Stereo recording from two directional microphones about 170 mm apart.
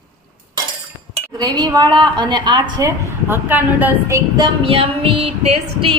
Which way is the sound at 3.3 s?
10° right (ahead or behind).